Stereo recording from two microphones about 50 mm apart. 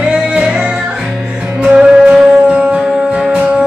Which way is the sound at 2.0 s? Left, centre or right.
Centre.